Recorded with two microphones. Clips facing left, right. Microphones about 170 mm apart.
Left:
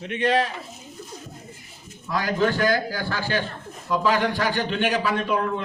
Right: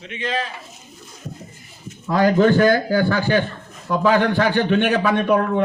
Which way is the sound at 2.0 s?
50° right (ahead or behind).